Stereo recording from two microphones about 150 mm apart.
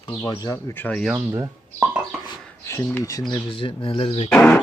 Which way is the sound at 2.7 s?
15° left (ahead or behind).